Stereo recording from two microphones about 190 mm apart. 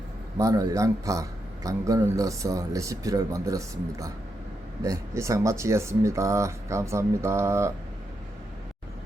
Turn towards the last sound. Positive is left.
turn(degrees=-15)  # may be behind; listen again after turning